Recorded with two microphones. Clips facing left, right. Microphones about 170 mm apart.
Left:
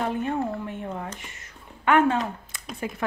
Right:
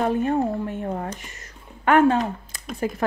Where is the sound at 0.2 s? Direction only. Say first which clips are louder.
Right 5 dB; 40° right (ahead or behind).